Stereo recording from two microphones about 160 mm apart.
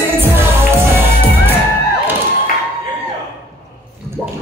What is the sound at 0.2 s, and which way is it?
Music, 15° right (ahead or behind).